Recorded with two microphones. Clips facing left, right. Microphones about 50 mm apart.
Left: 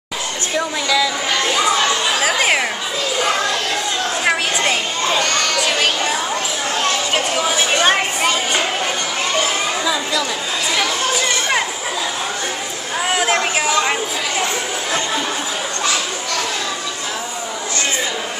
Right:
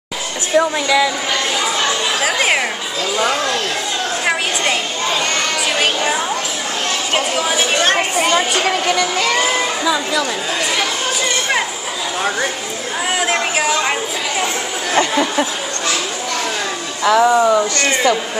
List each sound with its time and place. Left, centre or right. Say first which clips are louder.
0.6 s a woman's voice: right 5 dB; centre
2.1 s chatter: right 2 dB; centre
4.3 s a sound: even; centre
7.2 s speech: right 1 dB; centre
7.8 s a sound: even; centre
8.6 s music: right 4 dB; right
13.2 s speech: right 1 dB; centre
15.0 s speech: right 9 dB; right
17.0 s speech: right 14 dB; right